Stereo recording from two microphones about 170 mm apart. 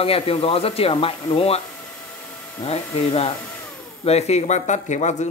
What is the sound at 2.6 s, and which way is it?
A man's voice, 35° left (ahead or behind).